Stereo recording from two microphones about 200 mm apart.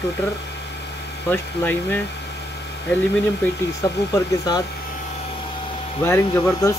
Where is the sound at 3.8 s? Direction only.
20° left (ahead or behind).